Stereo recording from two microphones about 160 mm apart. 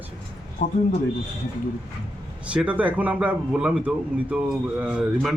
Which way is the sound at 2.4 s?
10° right (ahead or behind).